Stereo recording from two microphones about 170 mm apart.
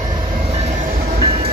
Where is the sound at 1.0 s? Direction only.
40° right (ahead or behind).